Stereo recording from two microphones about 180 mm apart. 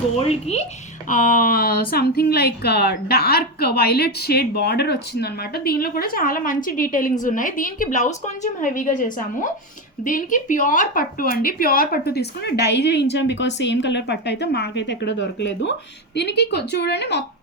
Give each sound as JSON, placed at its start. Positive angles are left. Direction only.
{"t": 0.2, "sound": "a woman's voice", "side_deg": 35}
{"t": 16.1, "sound": "a woman's voice", "side_deg": 70}